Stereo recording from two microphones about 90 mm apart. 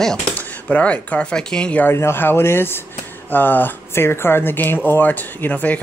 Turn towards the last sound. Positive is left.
turn(degrees=20)  # may be behind; listen again after turning